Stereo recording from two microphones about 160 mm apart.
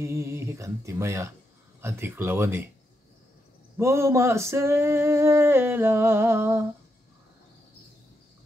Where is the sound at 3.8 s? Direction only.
15° right (ahead or behind).